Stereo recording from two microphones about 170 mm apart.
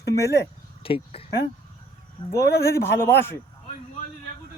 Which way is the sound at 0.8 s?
35° left (ahead or behind).